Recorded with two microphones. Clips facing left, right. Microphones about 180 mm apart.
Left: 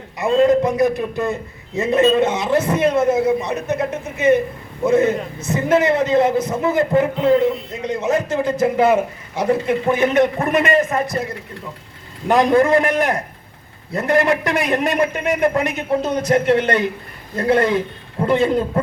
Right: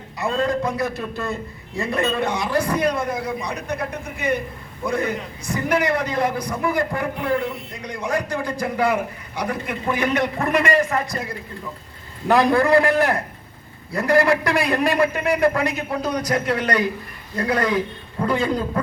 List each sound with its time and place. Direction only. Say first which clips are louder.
0.2 s a man's voice: left 8 dB; 20° left (ahead or behind)
12.3 s a man's voice: left 2 dB; 20° left (ahead or behind)